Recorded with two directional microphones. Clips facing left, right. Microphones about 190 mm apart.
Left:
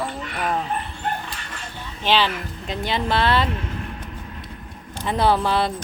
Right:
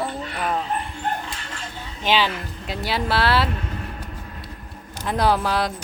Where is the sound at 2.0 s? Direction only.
10° right (ahead or behind).